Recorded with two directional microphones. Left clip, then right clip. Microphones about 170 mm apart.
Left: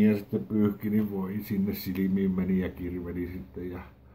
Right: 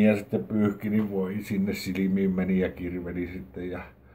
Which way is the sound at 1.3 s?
5° right (ahead or behind).